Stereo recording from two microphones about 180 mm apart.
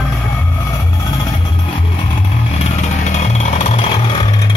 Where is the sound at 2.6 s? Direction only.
40° left (ahead or behind).